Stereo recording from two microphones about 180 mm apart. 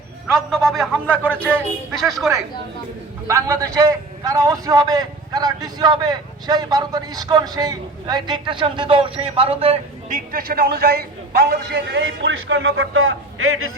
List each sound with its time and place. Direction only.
0.3 s a man's voice: centre (ahead or behind)
3.2 s a man's voice: 15° right (ahead or behind); by 9.8 s 35° right (ahead or behind)
10.1 s a man's voice: 50° right (ahead or behind); by 13.1 s 90° right